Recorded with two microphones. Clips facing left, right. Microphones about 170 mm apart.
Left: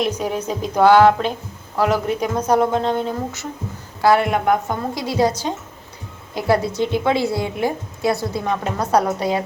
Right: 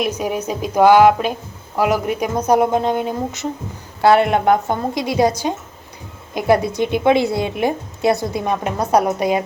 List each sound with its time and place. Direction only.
0.0 s a woman's voice: 10° right (ahead or behind)
4.0 s a man's voice: 25° right (ahead or behind)
4.9 s a woman's voice: 15° right (ahead or behind)
6.3 s a woman's voice: 15° right (ahead or behind)